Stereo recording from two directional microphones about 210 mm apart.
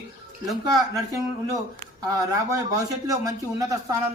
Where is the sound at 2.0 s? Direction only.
15° right (ahead or behind).